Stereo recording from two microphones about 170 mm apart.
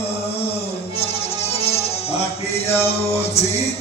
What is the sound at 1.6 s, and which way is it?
Music, 35° left (ahead or behind).